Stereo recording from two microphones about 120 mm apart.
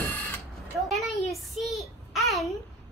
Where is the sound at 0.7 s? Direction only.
Centre (ahead or behind).